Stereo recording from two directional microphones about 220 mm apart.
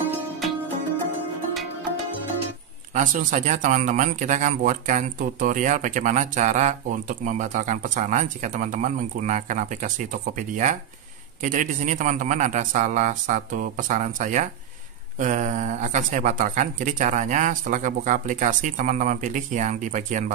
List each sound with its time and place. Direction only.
2.9 s speech: 35° right (ahead or behind)